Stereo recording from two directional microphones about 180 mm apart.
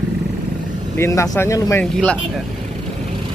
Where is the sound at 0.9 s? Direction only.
15° left (ahead or behind).